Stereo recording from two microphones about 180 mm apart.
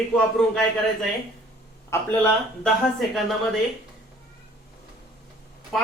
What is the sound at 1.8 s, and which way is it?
Speech, 15° left (ahead or behind).